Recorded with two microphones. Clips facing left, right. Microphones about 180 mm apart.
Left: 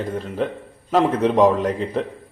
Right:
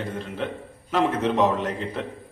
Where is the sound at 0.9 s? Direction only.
40° left (ahead or behind).